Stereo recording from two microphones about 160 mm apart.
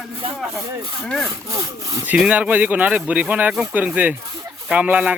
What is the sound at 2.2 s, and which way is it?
Speech, 10° right (ahead or behind).